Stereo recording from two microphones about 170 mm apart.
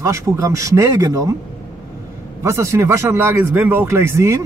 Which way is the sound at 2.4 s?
15° right (ahead or behind).